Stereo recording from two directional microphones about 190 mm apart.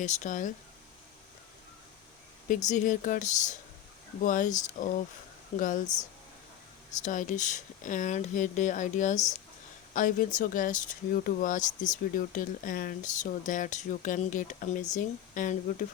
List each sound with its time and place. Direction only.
0.0 s speech: 40° left (ahead or behind)
2.6 s speech: 40° left (ahead or behind)
7.0 s speech: 40° left (ahead or behind)